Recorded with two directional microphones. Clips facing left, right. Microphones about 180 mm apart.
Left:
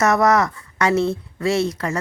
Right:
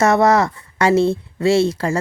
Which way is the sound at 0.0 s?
30° right (ahead or behind).